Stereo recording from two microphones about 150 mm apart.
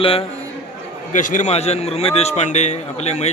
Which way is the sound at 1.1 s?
60° left (ahead or behind).